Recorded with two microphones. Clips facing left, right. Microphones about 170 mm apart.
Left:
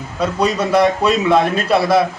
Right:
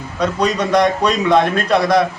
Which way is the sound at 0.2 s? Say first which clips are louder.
Even; 10° left (ahead or behind).